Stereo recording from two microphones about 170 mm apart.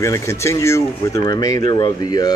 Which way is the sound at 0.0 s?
15° left (ahead or behind).